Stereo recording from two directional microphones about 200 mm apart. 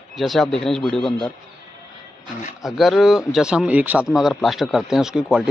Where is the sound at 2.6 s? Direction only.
Centre (ahead or behind).